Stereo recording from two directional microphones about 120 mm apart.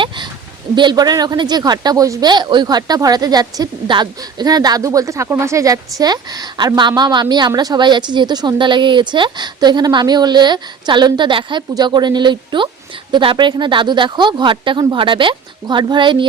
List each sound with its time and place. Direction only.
0.8 s a woman's voice: 35° right (ahead or behind)